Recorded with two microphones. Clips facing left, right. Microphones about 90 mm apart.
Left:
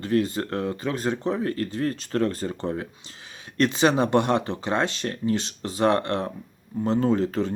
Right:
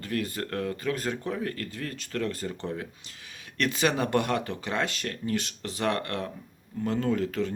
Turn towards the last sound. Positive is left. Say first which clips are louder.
# left 4 dB
turn(degrees=30)  # may be behind; listen again after turning